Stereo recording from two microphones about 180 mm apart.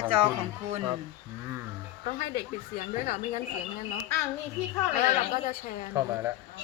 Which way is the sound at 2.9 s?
45° left (ahead or behind).